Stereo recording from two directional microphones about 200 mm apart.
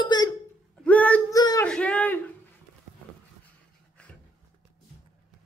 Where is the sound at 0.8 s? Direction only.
5° left (ahead or behind).